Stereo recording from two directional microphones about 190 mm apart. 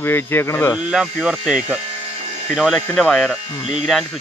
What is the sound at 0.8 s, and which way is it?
Speech, 5° right (ahead or behind).